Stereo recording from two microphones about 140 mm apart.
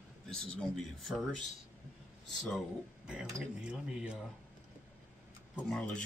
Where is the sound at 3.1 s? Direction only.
5° right (ahead or behind).